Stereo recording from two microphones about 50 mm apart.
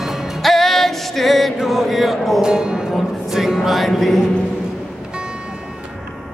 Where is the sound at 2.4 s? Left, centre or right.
Centre.